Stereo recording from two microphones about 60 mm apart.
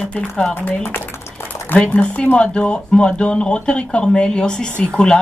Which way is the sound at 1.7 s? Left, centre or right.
Left.